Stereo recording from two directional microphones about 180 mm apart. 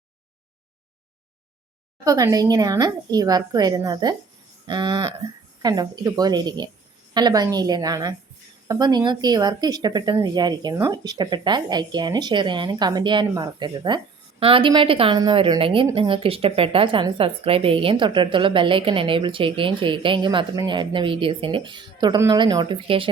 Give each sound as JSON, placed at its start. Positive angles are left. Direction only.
{"t": 2.0, "sound": "a woman's voice", "side_deg": -20}